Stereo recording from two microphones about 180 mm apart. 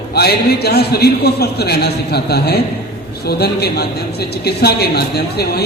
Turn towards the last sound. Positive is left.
turn(degrees=65)  # may be behind; listen again after turning